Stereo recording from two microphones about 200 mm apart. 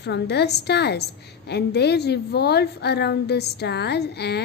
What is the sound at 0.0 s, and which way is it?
A woman's voice, 55° left (ahead or behind).